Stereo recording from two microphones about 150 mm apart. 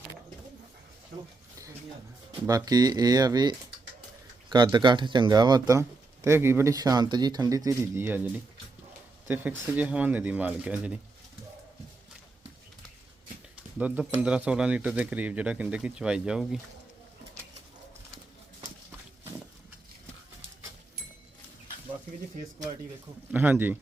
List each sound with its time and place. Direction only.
2.5 s speech: 25° right (ahead or behind)
13.7 s speech: 10° right (ahead or behind)
23.3 s speech: 10° right (ahead or behind)